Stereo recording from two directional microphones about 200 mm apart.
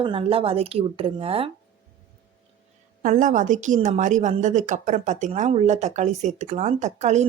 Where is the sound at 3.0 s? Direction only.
40° right (ahead or behind).